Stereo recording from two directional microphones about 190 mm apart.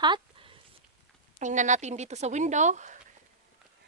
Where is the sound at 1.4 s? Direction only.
40° right (ahead or behind).